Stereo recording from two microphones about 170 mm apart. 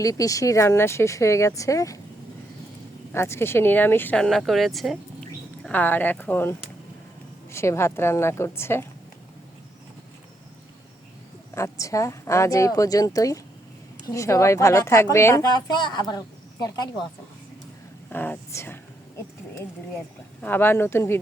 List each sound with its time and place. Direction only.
0.0 s speech: 20° left (ahead or behind)
3.1 s speech: 15° left (ahead or behind)
11.5 s a woman's voice: 15° left (ahead or behind)
18.1 s speech: 10° left (ahead or behind)
20.4 s speech: 10° left (ahead or behind)